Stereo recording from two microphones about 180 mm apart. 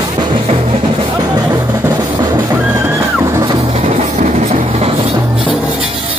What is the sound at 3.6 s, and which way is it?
Music, 35° right (ahead or behind).